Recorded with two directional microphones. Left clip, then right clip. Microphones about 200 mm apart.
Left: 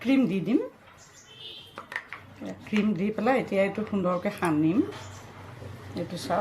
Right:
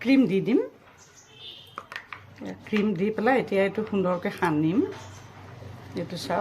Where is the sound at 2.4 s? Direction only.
30° right (ahead or behind).